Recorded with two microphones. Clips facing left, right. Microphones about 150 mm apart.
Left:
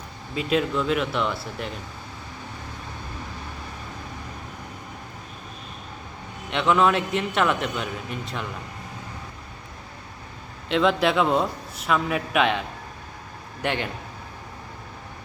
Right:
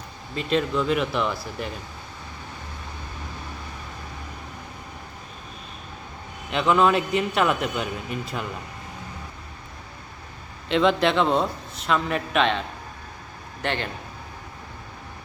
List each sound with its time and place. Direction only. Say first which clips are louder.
0.3 s a man's voice: even; 5° left (ahead or behind)
6.5 s a man's voice: right 1 dB; centre (ahead or behind)
10.7 s a man's voice: right 1 dB; centre (ahead or behind)